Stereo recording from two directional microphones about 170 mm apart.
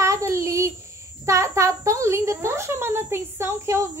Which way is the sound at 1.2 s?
15° right (ahead or behind).